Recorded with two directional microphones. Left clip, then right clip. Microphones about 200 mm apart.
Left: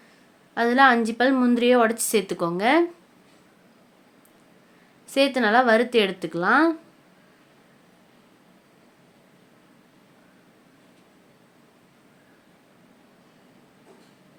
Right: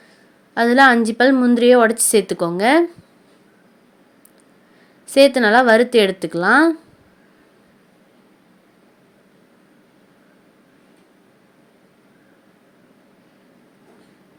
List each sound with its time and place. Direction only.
0.5 s a woman's voice: 25° right (ahead or behind)
5.0 s a woman's voice: 25° right (ahead or behind)